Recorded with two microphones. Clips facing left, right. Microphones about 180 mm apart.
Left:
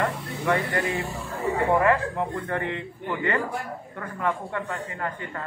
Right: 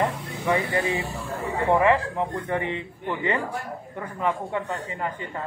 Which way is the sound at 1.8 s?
15° right (ahead or behind).